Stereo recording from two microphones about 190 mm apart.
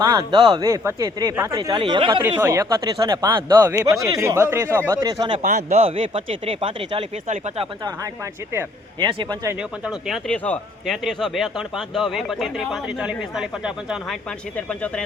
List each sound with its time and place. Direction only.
0.0 s speech: 20° right (ahead or behind)
2.2 s speech: 15° right (ahead or behind)
5.4 s speech: 40° right (ahead or behind)
9.0 s speech: 25° right (ahead or behind)
9.8 s speech: centre (ahead or behind)